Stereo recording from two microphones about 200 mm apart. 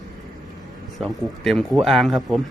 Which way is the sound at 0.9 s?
Centre (ahead or behind).